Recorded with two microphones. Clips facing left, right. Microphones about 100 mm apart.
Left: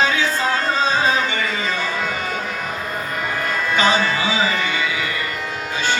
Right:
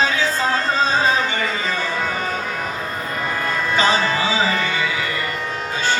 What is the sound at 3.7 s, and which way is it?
Music, 35° right (ahead or behind).